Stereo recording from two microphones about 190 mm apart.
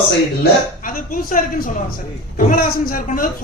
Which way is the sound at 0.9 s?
45° left (ahead or behind).